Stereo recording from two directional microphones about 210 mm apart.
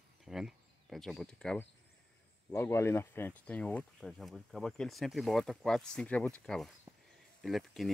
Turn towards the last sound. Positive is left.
turn(degrees=0)  # may be behind; listen again after turning